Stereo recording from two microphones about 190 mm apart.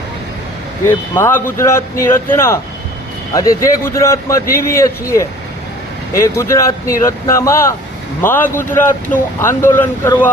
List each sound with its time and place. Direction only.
0.9 s speech: 10° left (ahead or behind)
3.6 s speech: 15° left (ahead or behind)